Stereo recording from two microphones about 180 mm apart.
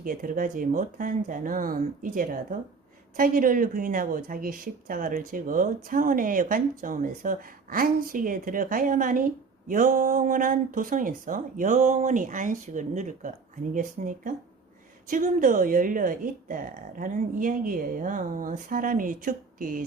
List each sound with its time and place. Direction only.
0.0 s speech: 50° right (ahead or behind)